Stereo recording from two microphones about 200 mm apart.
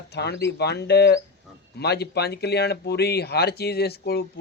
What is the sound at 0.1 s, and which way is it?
A man's voice, 55° left (ahead or behind).